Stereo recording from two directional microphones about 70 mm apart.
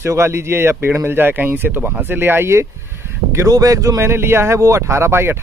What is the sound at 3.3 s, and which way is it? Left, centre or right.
Speech, right.